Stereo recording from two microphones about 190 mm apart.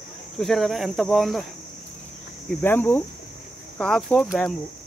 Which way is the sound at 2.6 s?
10° left (ahead or behind).